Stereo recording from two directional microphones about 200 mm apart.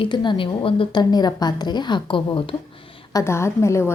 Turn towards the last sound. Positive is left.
turn(degrees=15)  # may be behind; listen again after turning